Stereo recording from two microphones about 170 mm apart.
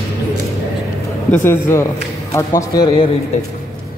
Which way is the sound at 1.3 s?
15° left (ahead or behind).